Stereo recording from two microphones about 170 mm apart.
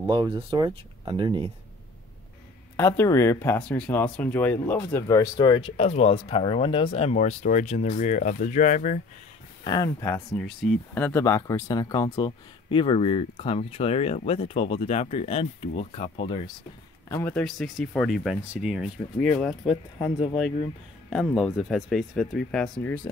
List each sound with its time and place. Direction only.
0.0 s speech: 25° right (ahead or behind)
2.8 s speech: 15° left (ahead or behind); by 9.0 s 45° left (ahead or behind)
9.7 s speech: 25° left (ahead or behind)
17.1 s speech: 10° left (ahead or behind); by 18.9 s 5° right (ahead or behind)
19.1 s speech: 10° left (ahead or behind)
21.1 s speech: centre (ahead or behind)